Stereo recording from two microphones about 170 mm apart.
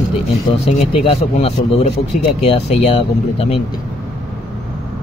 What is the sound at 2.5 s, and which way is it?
Speech, 35° left (ahead or behind).